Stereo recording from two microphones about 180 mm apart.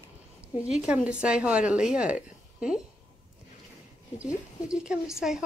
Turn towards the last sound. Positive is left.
turn(degrees=-5)  # may be behind; listen again after turning